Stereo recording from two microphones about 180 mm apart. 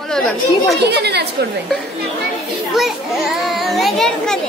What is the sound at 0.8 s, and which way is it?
Speech, 65° right (ahead or behind).